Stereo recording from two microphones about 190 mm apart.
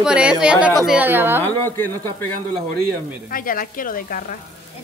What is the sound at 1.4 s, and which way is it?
Speech, 10° left (ahead or behind).